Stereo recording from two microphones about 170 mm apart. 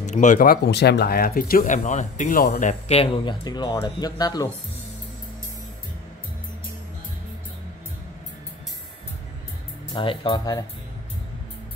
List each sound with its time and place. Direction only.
0.0 s speech: 45° left (ahead or behind)
2.9 s speech: 30° left (ahead or behind)
9.9 s speech: 30° left (ahead or behind)